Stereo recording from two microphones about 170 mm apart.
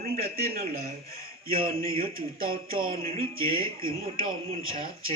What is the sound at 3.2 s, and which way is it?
Speech, 35° right (ahead or behind).